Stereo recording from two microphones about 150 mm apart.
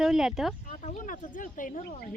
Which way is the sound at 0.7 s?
50° left (ahead or behind).